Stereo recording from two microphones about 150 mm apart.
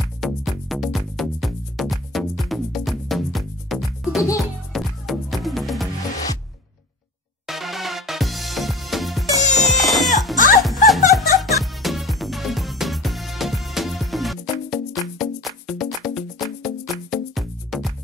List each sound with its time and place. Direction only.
0.0 s music: centre (ahead or behind)
7.4 s music: centre (ahead or behind)
10.3 s music: 60° left (ahead or behind)
10.6 s music: centre (ahead or behind)